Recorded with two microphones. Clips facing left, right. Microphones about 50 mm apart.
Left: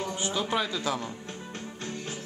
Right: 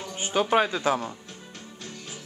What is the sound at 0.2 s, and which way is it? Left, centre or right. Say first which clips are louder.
Speech: right 8 dB; right.